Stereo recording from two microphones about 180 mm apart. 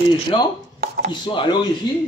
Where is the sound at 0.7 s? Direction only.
60° right (ahead or behind).